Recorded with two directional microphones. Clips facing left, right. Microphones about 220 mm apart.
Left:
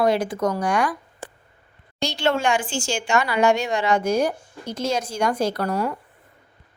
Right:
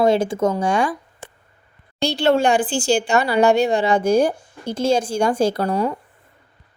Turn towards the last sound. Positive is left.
turn(degrees=-30)  # may be behind; listen again after turning